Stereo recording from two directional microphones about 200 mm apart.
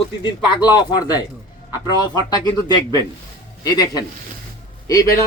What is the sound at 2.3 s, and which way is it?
Speech, 20° left (ahead or behind).